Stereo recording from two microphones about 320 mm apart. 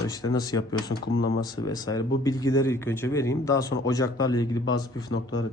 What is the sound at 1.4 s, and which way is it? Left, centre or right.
Speech, centre.